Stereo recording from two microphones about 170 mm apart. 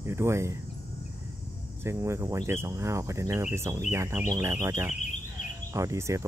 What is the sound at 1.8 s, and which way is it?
Speech, 15° right (ahead or behind).